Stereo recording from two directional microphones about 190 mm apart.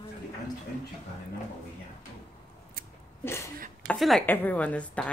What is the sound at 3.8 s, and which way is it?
Speech, 5° left (ahead or behind).